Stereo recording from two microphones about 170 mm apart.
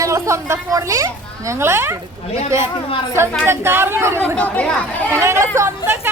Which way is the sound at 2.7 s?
30° left (ahead or behind).